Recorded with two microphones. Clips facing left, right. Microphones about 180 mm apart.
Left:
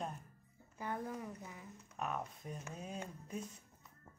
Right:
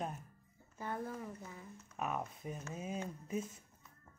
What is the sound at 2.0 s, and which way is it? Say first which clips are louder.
Music: right 2 dB; 5° right (ahead or behind).